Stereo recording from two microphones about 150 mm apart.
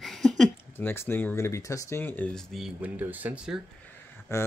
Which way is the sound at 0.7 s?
15° left (ahead or behind).